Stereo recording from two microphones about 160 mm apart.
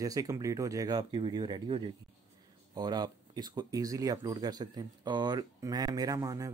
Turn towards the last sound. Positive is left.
turn(degrees=-20)  # may be behind; listen again after turning